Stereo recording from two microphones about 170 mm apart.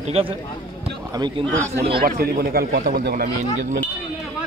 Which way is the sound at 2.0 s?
60° right (ahead or behind).